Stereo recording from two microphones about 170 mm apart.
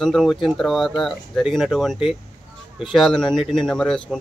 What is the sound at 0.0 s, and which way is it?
Speech, centre (ahead or behind).